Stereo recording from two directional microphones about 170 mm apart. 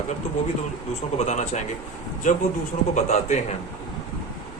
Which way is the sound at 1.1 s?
45° left (ahead or behind).